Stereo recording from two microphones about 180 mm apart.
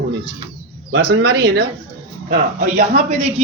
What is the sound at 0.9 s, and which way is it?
Speech, 60° right (ahead or behind).